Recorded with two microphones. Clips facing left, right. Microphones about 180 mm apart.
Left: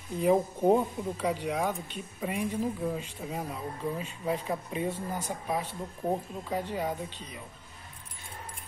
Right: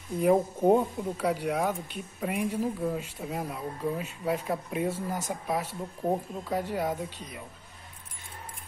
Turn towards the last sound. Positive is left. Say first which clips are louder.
# right 2 dB
turn(degrees=-10)  # may be behind; listen again after turning